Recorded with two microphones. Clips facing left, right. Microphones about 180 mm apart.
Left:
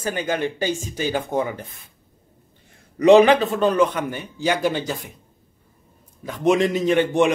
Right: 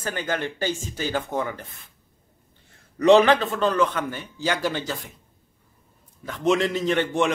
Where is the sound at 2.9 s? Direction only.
15° left (ahead or behind).